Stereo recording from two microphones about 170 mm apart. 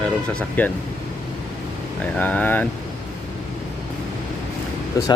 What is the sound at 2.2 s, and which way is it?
Speech, 10° left (ahead or behind).